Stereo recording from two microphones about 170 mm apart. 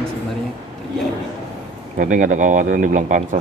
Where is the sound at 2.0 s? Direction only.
50° right (ahead or behind).